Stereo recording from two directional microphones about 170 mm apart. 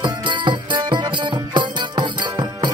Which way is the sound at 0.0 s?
25° right (ahead or behind).